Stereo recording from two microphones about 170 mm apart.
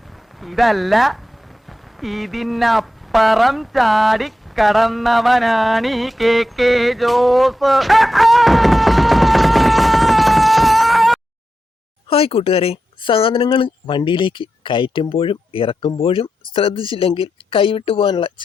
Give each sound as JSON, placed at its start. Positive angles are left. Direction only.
{"t": 0.3, "sound": "speech", "side_deg": 0}
{"t": 12.0, "sound": "speech", "side_deg": 35}